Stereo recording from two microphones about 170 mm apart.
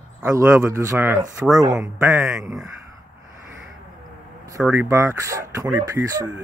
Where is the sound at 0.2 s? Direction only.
15° right (ahead or behind).